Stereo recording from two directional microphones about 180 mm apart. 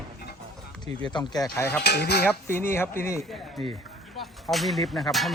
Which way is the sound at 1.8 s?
65° left (ahead or behind).